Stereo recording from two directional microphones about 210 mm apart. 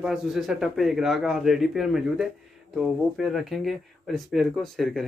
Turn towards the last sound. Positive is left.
turn(degrees=0)  # may be behind; listen again after turning